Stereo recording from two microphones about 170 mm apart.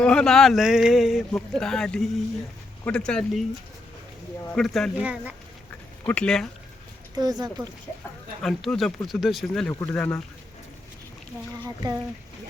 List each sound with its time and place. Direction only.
0.0 s speech: 5° left (ahead or behind)
4.5 s speech: centre (ahead or behind)
6.1 s speech: 5° left (ahead or behind)
7.2 s speech: 20° right (ahead or behind)
8.4 s speech: 5° left (ahead or behind)
11.8 s speech: 20° right (ahead or behind)